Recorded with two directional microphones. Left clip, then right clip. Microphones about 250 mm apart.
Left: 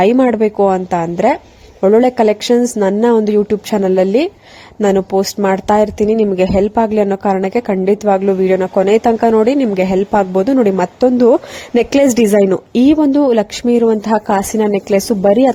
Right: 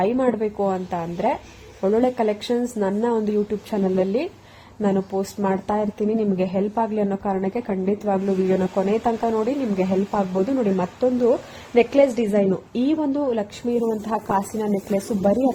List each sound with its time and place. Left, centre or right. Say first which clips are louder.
0.0 s speech: left 10 dB; left